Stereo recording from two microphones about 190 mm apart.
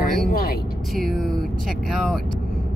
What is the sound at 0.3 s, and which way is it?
Vehicle, 50° left (ahead or behind).